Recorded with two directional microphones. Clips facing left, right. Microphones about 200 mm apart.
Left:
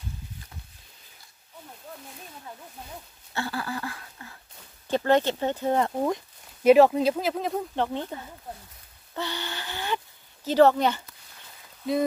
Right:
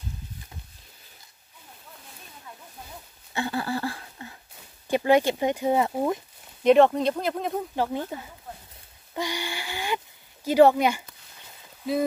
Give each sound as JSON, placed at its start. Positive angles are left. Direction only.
{"t": 3.3, "sound": "a sound", "side_deg": -20}
{"t": 4.8, "sound": "speech", "side_deg": -10}
{"t": 6.6, "sound": "speech", "side_deg": 5}